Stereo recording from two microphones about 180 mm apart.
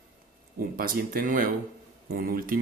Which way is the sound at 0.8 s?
55° right (ahead or behind).